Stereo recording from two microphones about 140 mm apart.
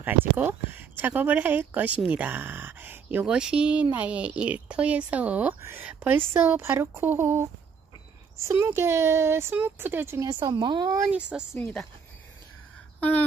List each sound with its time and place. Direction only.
0.0 s speech: 10° right (ahead or behind)
10.4 s speech: 35° right (ahead or behind)
11.1 s speech: 10° right (ahead or behind)
11.5 s speech: 15° left (ahead or behind)